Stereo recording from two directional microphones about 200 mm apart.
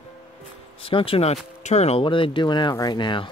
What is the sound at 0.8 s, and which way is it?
Speech, 25° left (ahead or behind).